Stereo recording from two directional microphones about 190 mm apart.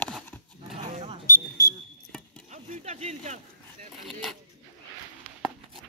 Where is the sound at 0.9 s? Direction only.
35° right (ahead or behind).